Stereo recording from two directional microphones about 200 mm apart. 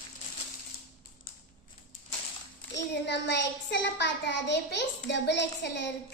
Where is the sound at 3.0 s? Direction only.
60° left (ahead or behind).